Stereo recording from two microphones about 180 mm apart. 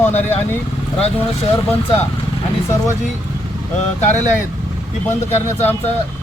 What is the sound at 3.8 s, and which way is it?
Speech, 40° left (ahead or behind).